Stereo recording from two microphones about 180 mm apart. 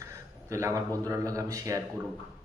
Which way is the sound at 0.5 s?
15° right (ahead or behind).